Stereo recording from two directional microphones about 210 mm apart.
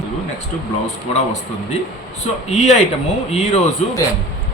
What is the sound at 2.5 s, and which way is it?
A man's voice, 30° left (ahead or behind).